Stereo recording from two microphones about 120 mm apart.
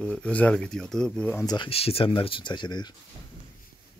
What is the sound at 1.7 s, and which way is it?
Speech, 55° left (ahead or behind).